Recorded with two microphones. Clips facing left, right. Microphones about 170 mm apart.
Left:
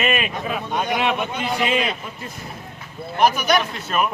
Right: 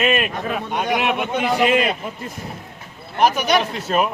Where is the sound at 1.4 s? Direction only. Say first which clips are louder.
Right 8 dB; 60° right (ahead or behind).